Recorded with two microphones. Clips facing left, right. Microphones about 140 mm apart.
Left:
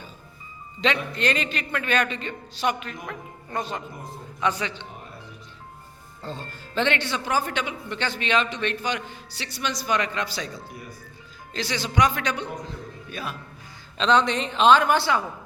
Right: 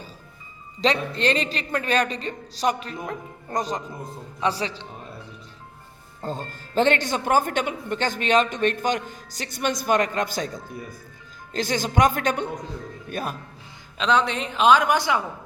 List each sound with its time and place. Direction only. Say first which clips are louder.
0.8 s a man's voice: right 2 dB; 35° right (ahead or behind)
6.2 s speech: right 4 dB; 45° right (ahead or behind)
14.0 s speech: left 1 dB; 10° right (ahead or behind)